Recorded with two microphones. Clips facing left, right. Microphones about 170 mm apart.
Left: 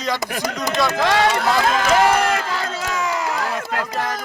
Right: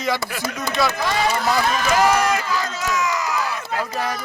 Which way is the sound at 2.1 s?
55° left (ahead or behind).